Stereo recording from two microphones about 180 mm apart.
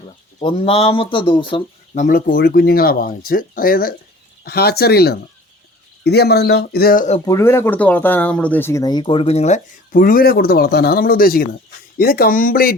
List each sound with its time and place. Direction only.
0.3 s speech: 30° left (ahead or behind)
2.0 s speech: 50° left (ahead or behind)
7.3 s speech: 15° left (ahead or behind); by 12.7 s 55° left (ahead or behind)